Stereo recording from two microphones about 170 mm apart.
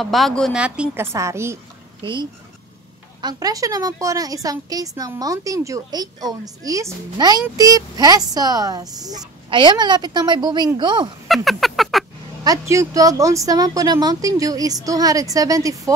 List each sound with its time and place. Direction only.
0.0 s a woman's voice: centre (ahead or behind); by 1.6 s 15° right (ahead or behind)
2.0 s a woman's voice: 30° right (ahead or behind)
11.2 s a sound: centre (ahead or behind)
12.4 s a woman's voice: 20° right (ahead or behind)